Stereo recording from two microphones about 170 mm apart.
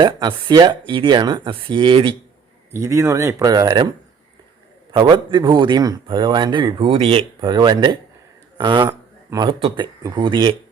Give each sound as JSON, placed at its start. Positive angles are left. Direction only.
{"t": 0.0, "sound": "speech", "side_deg": -25}
{"t": 2.7, "sound": "speech", "side_deg": -15}
{"t": 4.9, "sound": "speech", "side_deg": -25}